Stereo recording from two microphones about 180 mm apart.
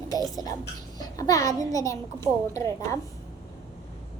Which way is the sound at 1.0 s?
20° left (ahead or behind).